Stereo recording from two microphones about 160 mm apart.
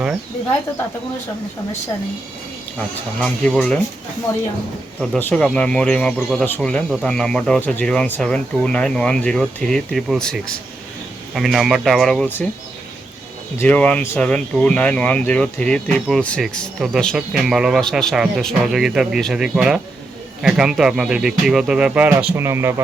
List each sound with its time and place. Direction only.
3.2 s speech: 5° left (ahead or behind)
5.2 s speech: 5° left (ahead or behind)
13.6 s speech: 10° left (ahead or behind); by 22.7 s 15° right (ahead or behind)